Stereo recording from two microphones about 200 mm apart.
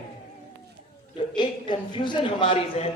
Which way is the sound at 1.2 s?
25° left (ahead or behind).